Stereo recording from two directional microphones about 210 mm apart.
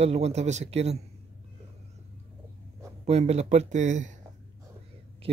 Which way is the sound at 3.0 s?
30° right (ahead or behind).